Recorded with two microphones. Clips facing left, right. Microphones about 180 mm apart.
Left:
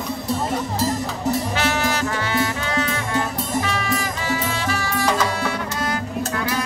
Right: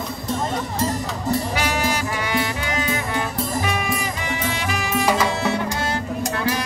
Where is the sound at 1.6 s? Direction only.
10° right (ahead or behind).